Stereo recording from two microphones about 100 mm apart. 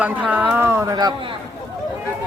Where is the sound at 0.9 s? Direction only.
40° right (ahead or behind).